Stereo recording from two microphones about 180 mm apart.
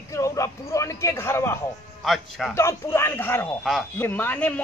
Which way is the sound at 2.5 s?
15° left (ahead or behind).